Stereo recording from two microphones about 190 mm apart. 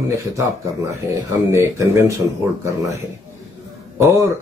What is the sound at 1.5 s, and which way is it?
Speech, 15° right (ahead or behind).